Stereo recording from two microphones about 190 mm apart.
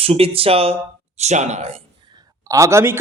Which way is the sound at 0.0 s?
30° right (ahead or behind).